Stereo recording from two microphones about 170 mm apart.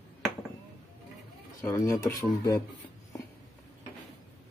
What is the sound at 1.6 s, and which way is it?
Speech, 15° left (ahead or behind).